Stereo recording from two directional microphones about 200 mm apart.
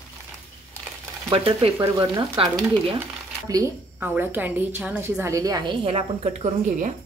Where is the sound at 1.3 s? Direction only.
25° right (ahead or behind).